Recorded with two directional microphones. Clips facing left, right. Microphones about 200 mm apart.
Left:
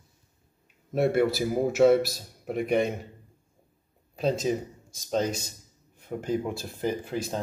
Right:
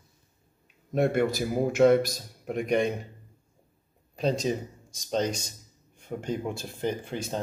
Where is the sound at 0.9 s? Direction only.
5° left (ahead or behind).